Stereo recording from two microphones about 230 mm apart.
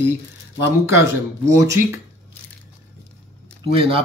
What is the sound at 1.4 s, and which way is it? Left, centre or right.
Speech, centre.